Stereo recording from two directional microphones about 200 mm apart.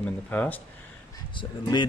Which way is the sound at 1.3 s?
25° left (ahead or behind).